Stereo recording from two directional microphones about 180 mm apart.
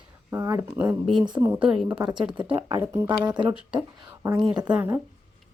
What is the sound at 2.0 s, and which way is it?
Speech, 25° right (ahead or behind).